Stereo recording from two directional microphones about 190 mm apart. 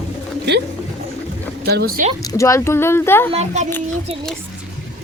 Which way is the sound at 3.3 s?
35° right (ahead or behind).